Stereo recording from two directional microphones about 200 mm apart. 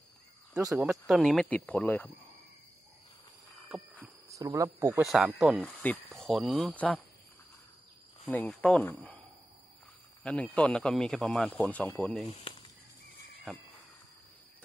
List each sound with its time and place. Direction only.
0.7 s speech: centre (ahead or behind)
4.0 s speech: 15° right (ahead or behind)
5.0 s speech: centre (ahead or behind)
8.3 s speech: 5° left (ahead or behind)
10.2 s speech: 5° left (ahead or behind)
12.3 s speech: 30° left (ahead or behind)